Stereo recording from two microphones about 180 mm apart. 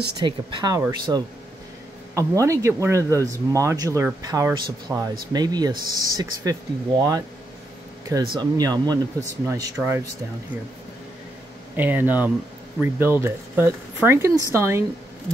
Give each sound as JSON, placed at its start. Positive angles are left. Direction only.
{"t": 0.2, "sound": "speech", "side_deg": -25}
{"t": 8.0, "sound": "air conditioning", "side_deg": -20}
{"t": 8.4, "sound": "speech", "side_deg": -20}
{"t": 11.7, "sound": "speech", "side_deg": -10}